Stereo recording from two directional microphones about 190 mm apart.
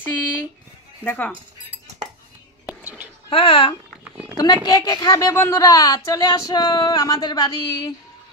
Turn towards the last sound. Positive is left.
turn(degrees=20)  # may be behind; listen again after turning